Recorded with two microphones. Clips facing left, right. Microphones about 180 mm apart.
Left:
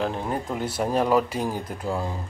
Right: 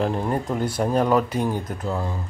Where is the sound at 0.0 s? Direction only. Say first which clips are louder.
Right 4 dB; centre (ahead or behind).